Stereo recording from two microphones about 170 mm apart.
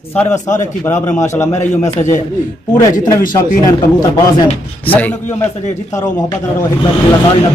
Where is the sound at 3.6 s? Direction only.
20° left (ahead or behind).